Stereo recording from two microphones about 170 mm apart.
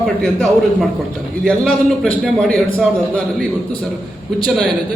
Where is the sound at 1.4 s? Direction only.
Centre (ahead or behind).